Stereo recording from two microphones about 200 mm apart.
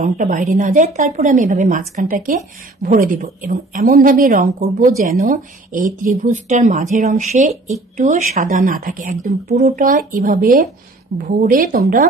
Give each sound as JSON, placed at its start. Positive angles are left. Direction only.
{"t": 0.0, "sound": "a woman's voice", "side_deg": -40}